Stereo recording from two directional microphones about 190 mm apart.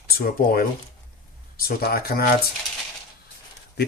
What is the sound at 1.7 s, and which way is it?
Speech, 55° left (ahead or behind).